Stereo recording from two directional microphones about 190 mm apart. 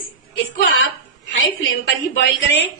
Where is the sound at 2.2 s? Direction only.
70° left (ahead or behind).